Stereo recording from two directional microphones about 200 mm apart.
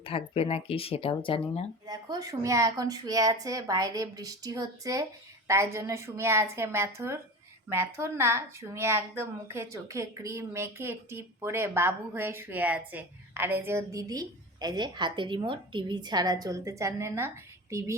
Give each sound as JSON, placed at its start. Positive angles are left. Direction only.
{"t": 0.0, "sound": "speech", "side_deg": 30}
{"t": 1.9, "sound": "a woman's voice", "side_deg": -20}